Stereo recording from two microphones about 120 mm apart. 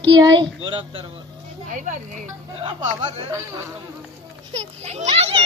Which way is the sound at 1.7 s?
90° right.